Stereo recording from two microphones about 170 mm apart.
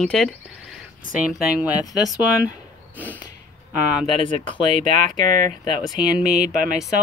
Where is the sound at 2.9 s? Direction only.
10° right (ahead or behind).